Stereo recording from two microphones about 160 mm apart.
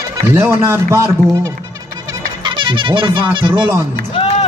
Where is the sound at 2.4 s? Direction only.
30° right (ahead or behind).